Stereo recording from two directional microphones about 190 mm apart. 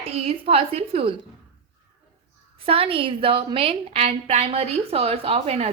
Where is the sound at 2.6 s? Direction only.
30° right (ahead or behind).